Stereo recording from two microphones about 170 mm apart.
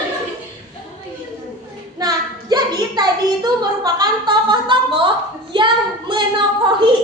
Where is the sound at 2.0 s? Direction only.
25° right (ahead or behind).